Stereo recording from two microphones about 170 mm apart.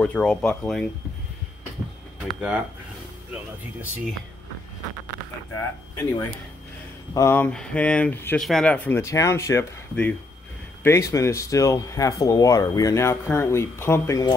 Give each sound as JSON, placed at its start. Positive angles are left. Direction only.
{"t": 0.0, "sound": "speech", "side_deg": 5}
{"t": 2.2, "sound": "speech", "side_deg": -5}
{"t": 5.5, "sound": "speech", "side_deg": 10}